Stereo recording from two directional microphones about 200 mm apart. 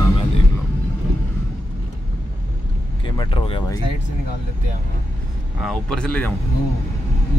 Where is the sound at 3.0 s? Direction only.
25° left (ahead or behind).